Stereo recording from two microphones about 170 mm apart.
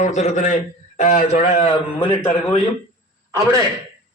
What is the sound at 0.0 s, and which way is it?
A man's voice, 45° left (ahead or behind).